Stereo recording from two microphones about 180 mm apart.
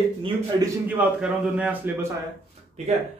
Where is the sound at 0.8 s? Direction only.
5° right (ahead or behind).